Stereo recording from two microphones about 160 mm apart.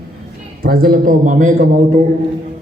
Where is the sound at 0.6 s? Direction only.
65° right (ahead or behind).